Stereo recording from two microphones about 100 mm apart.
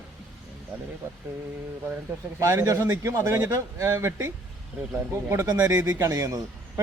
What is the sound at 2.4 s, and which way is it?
Speech, 30° right (ahead or behind).